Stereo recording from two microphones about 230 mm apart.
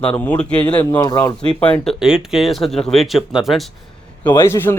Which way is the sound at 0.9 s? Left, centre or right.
Centre.